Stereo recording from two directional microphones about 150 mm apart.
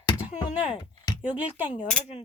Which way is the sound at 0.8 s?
30° left (ahead or behind).